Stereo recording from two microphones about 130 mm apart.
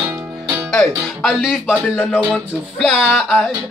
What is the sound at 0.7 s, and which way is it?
Speech, 5° left (ahead or behind).